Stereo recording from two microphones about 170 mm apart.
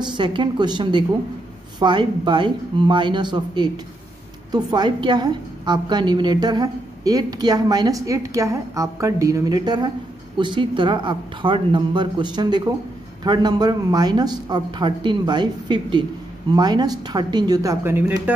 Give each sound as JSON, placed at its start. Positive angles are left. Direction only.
{"t": 0.0, "sound": "a woman's voice", "side_deg": -25}